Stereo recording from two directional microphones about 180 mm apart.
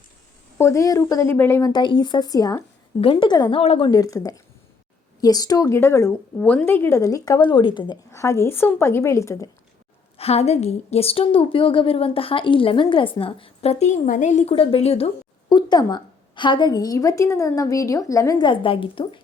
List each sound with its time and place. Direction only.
0.6 s a woman's voice: 15° left (ahead or behind)
1.7 s a woman's voice: 25° left (ahead or behind)
3.6 s speech: 35° left (ahead or behind)
3.8 s a woman's voice: 20° left (ahead or behind)
10.2 s a woman's voice: 35° left (ahead or behind)